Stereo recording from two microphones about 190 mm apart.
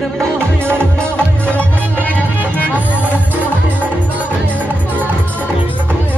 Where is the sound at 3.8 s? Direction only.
10° right (ahead or behind).